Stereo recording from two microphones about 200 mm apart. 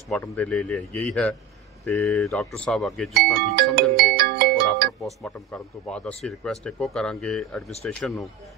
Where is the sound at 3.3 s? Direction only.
50° right (ahead or behind).